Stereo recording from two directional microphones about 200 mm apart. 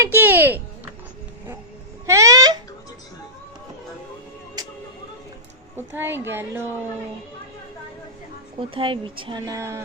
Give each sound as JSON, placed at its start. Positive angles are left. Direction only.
{"t": 0.0, "sound": "a woman's voice", "side_deg": -10}
{"t": 2.0, "sound": "a sound", "side_deg": -15}
{"t": 5.7, "sound": "a woman's voice", "side_deg": -10}
{"t": 8.7, "sound": "speech", "side_deg": -25}
{"t": 9.6, "sound": "a woman's voice", "side_deg": -15}